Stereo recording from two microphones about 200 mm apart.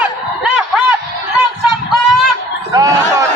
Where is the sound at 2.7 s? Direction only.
15° right (ahead or behind).